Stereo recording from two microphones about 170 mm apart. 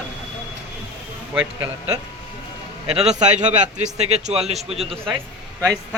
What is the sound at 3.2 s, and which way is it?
A man's voice, 45° right (ahead or behind).